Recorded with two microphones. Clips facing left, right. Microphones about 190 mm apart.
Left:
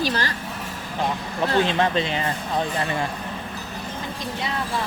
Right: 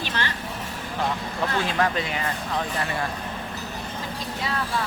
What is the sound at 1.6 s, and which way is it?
Speech, 25° left (ahead or behind).